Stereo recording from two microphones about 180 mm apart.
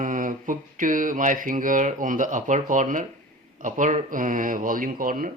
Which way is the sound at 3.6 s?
45° right (ahead or behind).